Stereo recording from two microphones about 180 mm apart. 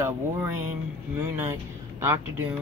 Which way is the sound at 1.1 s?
15° right (ahead or behind).